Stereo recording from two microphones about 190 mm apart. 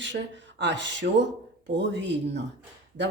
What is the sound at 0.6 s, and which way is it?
A woman's voice, 70° right (ahead or behind).